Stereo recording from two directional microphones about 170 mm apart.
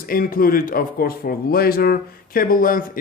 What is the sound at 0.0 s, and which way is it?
Speech, 55° left (ahead or behind).